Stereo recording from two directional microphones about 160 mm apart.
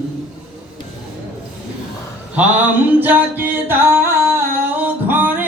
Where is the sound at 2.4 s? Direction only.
10° right (ahead or behind).